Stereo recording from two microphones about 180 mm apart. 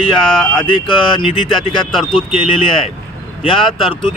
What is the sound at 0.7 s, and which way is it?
Speech, 25° left (ahead or behind).